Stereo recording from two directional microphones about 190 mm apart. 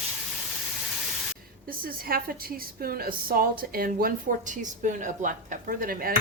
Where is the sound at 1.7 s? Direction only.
50° right (ahead or behind).